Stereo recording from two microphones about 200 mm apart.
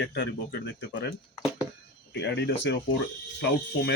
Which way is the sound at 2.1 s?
60° left (ahead or behind).